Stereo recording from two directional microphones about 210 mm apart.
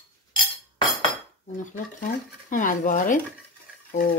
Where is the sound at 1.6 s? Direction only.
40° left (ahead or behind).